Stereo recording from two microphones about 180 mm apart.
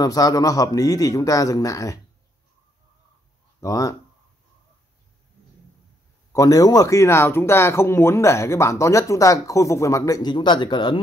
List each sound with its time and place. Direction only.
0.0 s a man's voice: 20° left (ahead or behind)
3.6 s speech: 20° left (ahead or behind)
6.3 s speech: 20° left (ahead or behind)